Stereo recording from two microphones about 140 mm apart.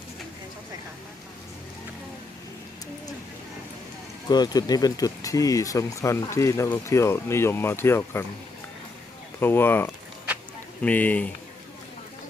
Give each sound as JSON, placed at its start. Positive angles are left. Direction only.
{"t": 4.3, "sound": "speech", "side_deg": 30}
{"t": 9.4, "sound": "speech", "side_deg": 15}